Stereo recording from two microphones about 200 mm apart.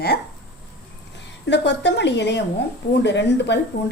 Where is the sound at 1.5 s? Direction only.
60° left (ahead or behind).